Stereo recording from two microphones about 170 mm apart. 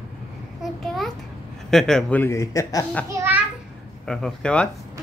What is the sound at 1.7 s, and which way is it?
A man's voice, 5° left (ahead or behind).